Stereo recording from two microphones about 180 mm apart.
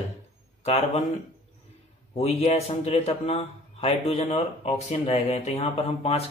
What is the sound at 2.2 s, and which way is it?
Speech, 35° left (ahead or behind).